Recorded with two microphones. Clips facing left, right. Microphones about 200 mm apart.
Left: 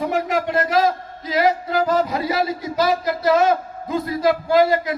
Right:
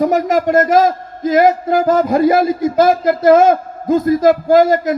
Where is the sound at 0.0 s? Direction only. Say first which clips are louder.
Right 7 dB; 40° right (ahead or behind).